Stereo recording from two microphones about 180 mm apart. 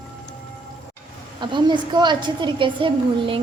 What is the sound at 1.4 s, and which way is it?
A woman's voice, 25° right (ahead or behind).